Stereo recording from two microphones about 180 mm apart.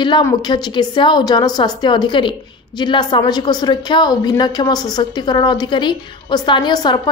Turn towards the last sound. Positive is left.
turn(degrees=25)  # may be behind; listen again after turning